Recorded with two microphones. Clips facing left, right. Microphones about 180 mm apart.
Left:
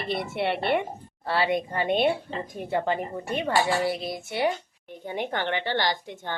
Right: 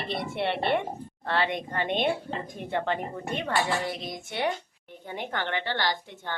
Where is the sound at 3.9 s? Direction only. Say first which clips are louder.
Left 5 dB; 10° left (ahead or behind).